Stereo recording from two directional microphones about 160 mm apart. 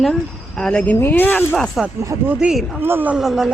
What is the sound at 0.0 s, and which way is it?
Speech, 5° left (ahead or behind).